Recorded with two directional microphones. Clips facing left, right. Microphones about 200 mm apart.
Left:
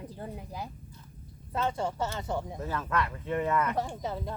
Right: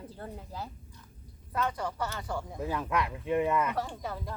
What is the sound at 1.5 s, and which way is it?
Speech, 25° left (ahead or behind).